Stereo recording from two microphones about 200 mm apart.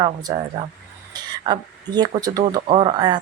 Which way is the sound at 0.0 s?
20° right (ahead or behind).